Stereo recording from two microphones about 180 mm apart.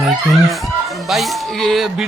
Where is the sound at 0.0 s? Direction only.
Centre (ahead or behind).